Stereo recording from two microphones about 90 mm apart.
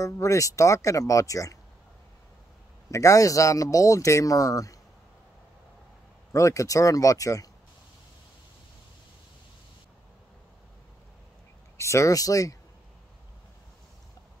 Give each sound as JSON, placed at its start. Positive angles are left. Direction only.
{"t": 0.0, "sound": "speech", "side_deg": 35}
{"t": 2.9, "sound": "speech", "side_deg": 35}
{"t": 6.3, "sound": "speech", "side_deg": 35}
{"t": 11.7, "sound": "speech", "side_deg": 35}